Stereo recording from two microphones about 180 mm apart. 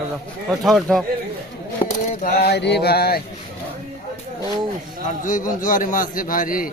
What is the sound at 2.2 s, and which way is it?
Mantra, 65° left (ahead or behind).